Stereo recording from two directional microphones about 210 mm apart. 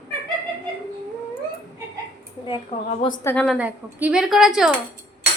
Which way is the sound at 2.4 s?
20° left (ahead or behind).